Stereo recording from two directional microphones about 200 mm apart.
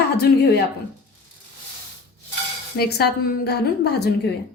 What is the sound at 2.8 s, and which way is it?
A woman's voice, 55° left (ahead or behind).